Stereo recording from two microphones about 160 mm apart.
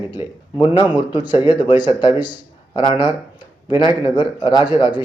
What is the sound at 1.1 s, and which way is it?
Speech, 30° left (ahead or behind).